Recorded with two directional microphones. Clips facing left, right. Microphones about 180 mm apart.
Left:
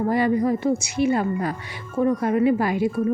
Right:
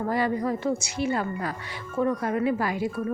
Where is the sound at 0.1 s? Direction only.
20° left (ahead or behind).